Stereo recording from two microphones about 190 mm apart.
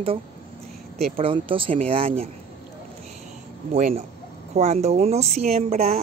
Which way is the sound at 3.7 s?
35° right (ahead or behind).